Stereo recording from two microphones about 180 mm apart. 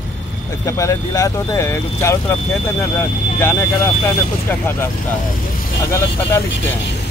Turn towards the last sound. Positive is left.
turn(degrees=15)  # may be behind; listen again after turning